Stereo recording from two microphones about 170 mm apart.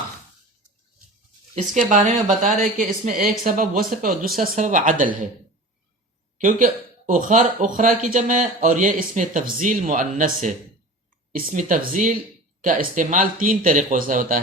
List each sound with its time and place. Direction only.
1.9 s speech: 50° right (ahead or behind)
7.0 s speech: 50° right (ahead or behind)